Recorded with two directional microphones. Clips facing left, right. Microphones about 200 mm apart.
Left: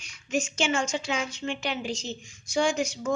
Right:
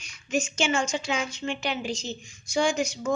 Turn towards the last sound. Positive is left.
turn(degrees=-10)  # may be behind; listen again after turning